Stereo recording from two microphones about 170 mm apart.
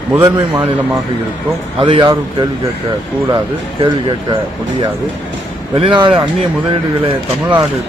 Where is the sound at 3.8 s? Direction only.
30° right (ahead or behind).